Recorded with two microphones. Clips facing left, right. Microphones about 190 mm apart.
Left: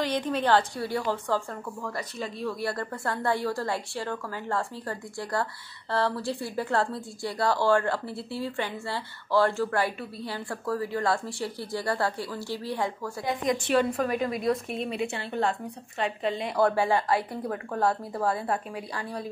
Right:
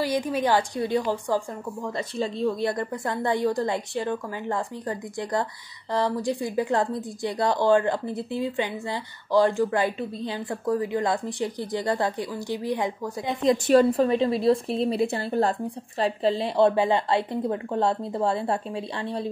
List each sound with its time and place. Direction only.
0.0 s a woman's voice: 10° right (ahead or behind)
13.7 s a woman's voice: 40° right (ahead or behind)
14.0 s a woman's voice: 25° right (ahead or behind)